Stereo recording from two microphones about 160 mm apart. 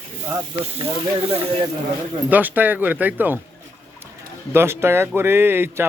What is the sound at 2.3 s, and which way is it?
Speech, 10° right (ahead or behind).